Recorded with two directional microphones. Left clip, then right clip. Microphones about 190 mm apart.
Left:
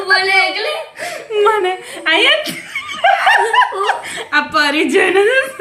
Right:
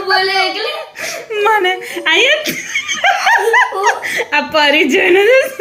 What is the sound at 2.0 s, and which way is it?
Chuckle, centre (ahead or behind).